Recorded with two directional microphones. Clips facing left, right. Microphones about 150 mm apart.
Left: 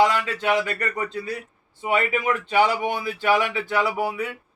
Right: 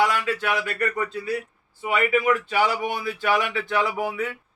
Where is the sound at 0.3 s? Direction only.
20° left (ahead or behind).